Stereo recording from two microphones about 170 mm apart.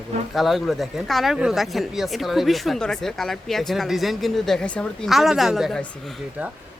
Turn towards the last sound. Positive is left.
turn(degrees=0)  # may be behind; listen again after turning